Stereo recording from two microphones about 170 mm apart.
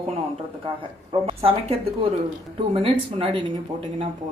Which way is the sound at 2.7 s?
35° right (ahead or behind).